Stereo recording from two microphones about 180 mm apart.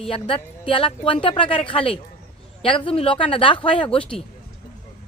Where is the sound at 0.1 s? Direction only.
30° left (ahead or behind).